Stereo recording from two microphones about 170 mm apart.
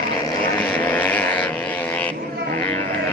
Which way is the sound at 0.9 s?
10° left (ahead or behind).